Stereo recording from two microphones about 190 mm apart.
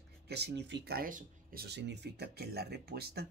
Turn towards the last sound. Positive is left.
turn(degrees=-55)  # may be behind; listen again after turning